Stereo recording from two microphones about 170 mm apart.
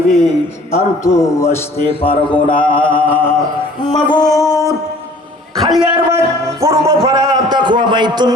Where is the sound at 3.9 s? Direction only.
25° left (ahead or behind).